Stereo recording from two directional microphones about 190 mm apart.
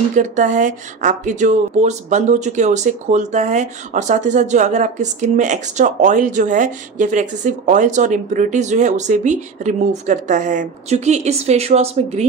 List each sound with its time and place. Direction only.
0.1 s speech: 40° right (ahead or behind)